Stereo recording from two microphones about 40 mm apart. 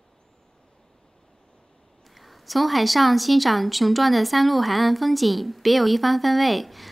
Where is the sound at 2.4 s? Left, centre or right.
Centre.